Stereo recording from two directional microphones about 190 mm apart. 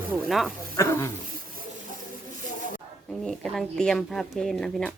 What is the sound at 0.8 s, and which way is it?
Speech, 15° left (ahead or behind).